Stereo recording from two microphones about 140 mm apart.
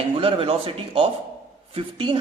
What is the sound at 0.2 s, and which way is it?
A man's voice, 40° right (ahead or behind).